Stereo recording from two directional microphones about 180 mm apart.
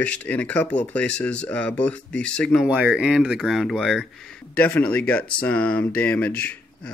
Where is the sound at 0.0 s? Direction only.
5° left (ahead or behind).